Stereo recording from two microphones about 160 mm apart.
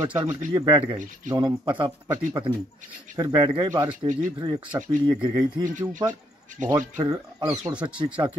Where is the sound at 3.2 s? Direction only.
25° right (ahead or behind).